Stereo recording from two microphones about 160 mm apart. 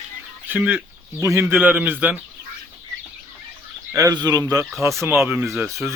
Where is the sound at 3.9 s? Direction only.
20° right (ahead or behind).